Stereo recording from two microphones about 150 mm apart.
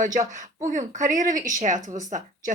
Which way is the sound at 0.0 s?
60° right (ahead or behind).